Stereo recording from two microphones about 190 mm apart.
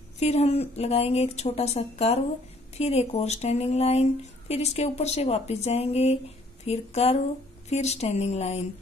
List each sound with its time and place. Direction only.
0.2 s speech: 35° left (ahead or behind)